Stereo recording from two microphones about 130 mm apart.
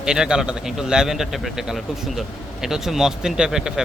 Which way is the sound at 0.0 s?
5° right (ahead or behind).